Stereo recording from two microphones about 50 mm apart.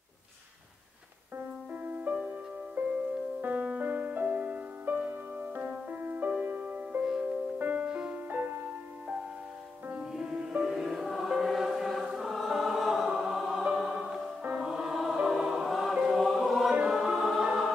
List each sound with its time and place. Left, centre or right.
1.7 s music: right
3.3 s music: right
10.1 s music: centre
10.6 s choir: centre
14.6 s music: centre
16.1 s choir: centre
16.8 s music: centre